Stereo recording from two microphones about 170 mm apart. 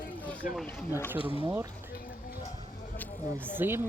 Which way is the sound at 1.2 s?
30° left (ahead or behind).